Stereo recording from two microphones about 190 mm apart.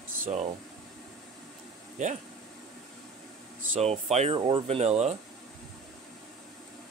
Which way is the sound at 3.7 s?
35° right (ahead or behind).